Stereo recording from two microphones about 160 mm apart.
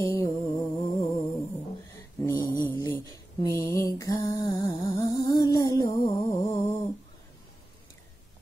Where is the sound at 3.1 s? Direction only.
25° left (ahead or behind).